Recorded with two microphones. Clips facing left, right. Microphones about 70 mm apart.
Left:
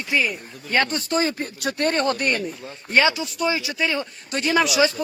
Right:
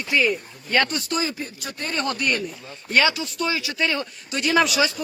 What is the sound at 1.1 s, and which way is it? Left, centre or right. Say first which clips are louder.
Speech: left 6 dB; left.